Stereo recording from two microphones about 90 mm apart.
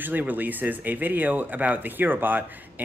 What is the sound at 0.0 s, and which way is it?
Speech, 20° right (ahead or behind).